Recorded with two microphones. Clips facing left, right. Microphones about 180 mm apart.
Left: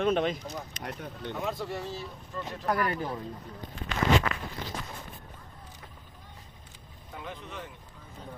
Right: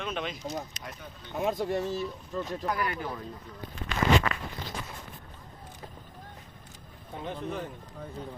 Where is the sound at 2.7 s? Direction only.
45° left (ahead or behind).